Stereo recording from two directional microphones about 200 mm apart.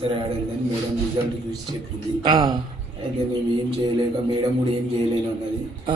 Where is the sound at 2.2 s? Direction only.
20° right (ahead or behind).